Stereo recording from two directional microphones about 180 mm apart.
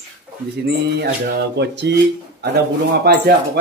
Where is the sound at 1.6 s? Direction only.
75° right (ahead or behind).